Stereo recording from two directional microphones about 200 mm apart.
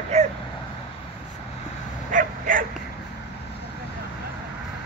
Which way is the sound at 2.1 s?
40° right (ahead or behind).